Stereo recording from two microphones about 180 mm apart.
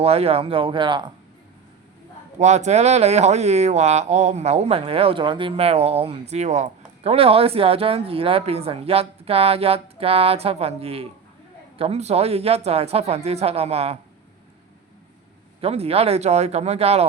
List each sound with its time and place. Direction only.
0.0 s speech: 35° right (ahead or behind)
2.4 s speech: 40° right (ahead or behind)
15.6 s speech: 35° right (ahead or behind)